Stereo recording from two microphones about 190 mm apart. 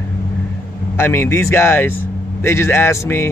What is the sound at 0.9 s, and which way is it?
Speech, 15° left (ahead or behind).